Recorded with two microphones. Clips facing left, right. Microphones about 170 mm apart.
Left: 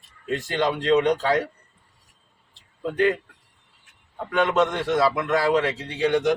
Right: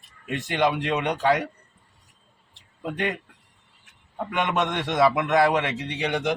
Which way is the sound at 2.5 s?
20° right (ahead or behind).